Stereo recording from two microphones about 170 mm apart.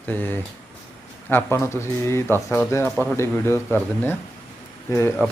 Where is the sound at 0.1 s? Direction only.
10° left (ahead or behind).